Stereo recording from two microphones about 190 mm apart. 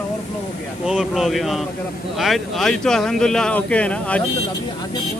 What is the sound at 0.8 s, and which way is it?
Speech, 5° right (ahead or behind).